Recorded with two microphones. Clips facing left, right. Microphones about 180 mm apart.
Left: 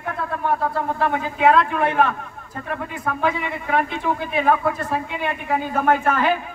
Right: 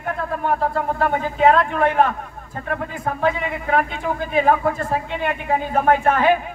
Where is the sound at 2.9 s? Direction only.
35° right (ahead or behind).